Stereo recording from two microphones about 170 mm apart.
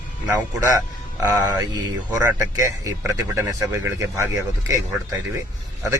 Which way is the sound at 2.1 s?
15° right (ahead or behind).